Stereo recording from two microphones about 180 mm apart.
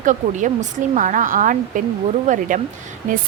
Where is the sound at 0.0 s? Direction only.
45° right (ahead or behind).